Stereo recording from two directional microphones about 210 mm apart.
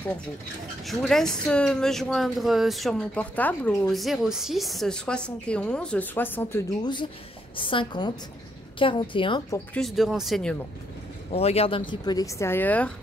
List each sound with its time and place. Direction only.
0.8 s speech: centre (ahead or behind)
6.8 s speech: 20° left (ahead or behind)
9.8 s speech: centre (ahead or behind)
11.3 s speech: 30° left (ahead or behind); by 12.9 s 5° left (ahead or behind)